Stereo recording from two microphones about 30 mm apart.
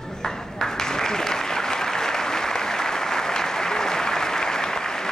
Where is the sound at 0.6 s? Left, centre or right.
Centre.